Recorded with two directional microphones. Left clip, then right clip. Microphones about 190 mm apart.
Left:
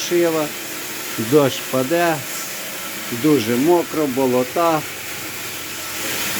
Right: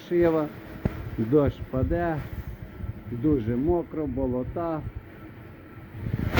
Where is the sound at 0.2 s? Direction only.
5° left (ahead or behind).